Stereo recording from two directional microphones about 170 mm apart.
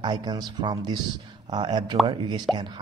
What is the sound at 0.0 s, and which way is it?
A man's voice, 25° right (ahead or behind).